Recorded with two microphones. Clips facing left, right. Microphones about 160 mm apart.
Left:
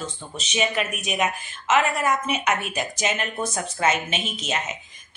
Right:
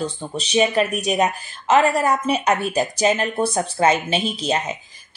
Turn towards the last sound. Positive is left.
turn(degrees=-35)  # may be behind; listen again after turning